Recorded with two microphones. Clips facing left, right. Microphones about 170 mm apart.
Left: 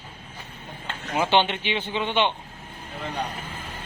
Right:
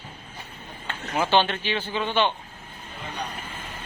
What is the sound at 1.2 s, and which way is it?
Speech, 20° left (ahead or behind).